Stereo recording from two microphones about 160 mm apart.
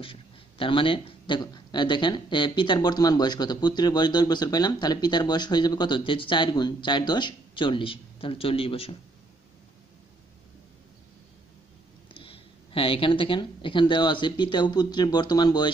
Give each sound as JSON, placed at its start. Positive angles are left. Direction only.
{"t": 0.0, "sound": "speech", "side_deg": 35}
{"t": 12.1, "sound": "speech", "side_deg": 35}